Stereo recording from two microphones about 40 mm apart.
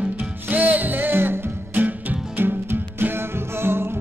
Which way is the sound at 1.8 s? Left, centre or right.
Right.